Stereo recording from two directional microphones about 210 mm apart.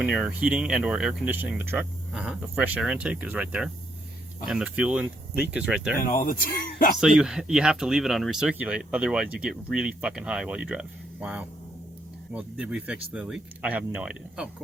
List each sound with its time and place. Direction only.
0.0 s speech: 5° right (ahead or behind)
6.0 s speech: 40° left (ahead or behind)
7.0 s speech: 5° right (ahead or behind)